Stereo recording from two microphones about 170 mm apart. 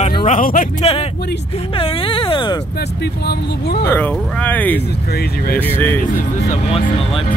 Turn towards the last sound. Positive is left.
turn(degrees=10)  # may be behind; listen again after turning